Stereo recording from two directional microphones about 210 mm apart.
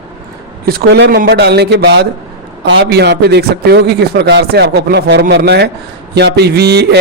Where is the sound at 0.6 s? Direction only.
50° right (ahead or behind).